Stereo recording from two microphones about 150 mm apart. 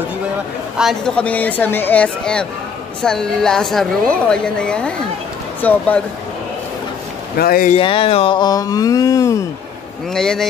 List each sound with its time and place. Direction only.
0.7 s a woman's voice: centre (ahead or behind)
7.3 s speech: 90° left
7.8 s speech: 35° left (ahead or behind); by 9.4 s 20° left (ahead or behind)
10.1 s a woman's voice: 5° left (ahead or behind)